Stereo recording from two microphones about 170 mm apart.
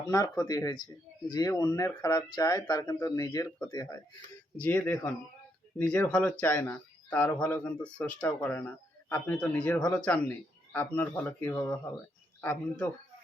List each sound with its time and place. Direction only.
0.1 s speech: 20° left (ahead or behind)
4.5 s speech: 5° left (ahead or behind)